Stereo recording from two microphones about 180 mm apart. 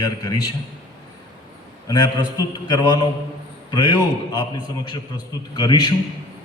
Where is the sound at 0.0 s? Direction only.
20° left (ahead or behind).